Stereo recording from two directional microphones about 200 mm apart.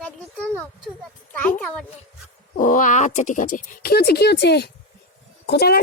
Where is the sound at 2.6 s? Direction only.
40° left (ahead or behind).